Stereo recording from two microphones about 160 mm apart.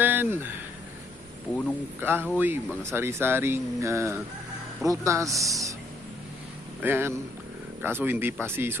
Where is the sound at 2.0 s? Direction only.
15° right (ahead or behind).